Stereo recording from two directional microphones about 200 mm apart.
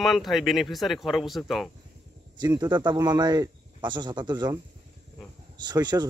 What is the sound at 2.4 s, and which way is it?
Speech, 20° right (ahead or behind).